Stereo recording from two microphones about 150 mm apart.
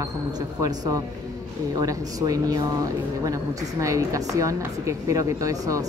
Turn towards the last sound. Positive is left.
turn(degrees=-25)  # may be behind; listen again after turning